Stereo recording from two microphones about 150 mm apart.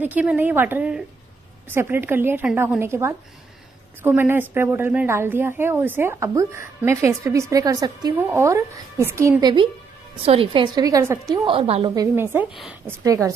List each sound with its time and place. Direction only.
0.0 s a woman's voice: 10° right (ahead or behind); by 9.7 s 30° right (ahead or behind)
10.2 s a woman's voice: 40° right (ahead or behind); by 11.4 s 20° right (ahead or behind)
11.4 s a woman's voice: 40° right (ahead or behind)
11.9 s a woman's voice: 20° right (ahead or behind)